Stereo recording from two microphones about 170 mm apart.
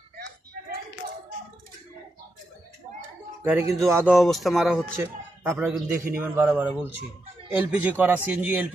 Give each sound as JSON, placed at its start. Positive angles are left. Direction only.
{"t": 3.4, "sound": "speech", "side_deg": -10}
{"t": 4.1, "sound": "speech", "side_deg": 0}
{"t": 4.9, "sound": "a man's voice", "side_deg": -15}